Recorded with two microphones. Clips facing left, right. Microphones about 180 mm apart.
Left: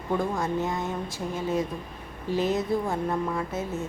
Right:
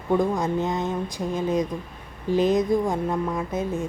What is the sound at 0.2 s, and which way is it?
Speech, 20° right (ahead or behind).